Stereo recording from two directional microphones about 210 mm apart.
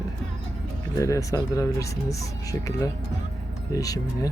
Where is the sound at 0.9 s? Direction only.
15° left (ahead or behind).